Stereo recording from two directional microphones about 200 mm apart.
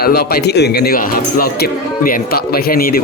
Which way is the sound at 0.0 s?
50° left (ahead or behind).